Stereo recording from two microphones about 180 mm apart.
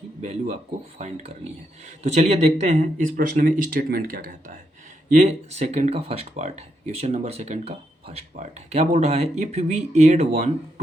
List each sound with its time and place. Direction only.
0.2 s speech: 35° right (ahead or behind)
5.1 s speech: 40° right (ahead or behind)